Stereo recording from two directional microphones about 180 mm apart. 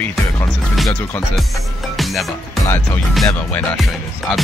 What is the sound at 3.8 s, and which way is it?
Music, centre (ahead or behind).